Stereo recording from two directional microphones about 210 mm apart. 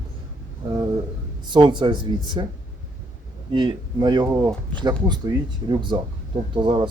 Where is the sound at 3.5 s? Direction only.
25° right (ahead or behind).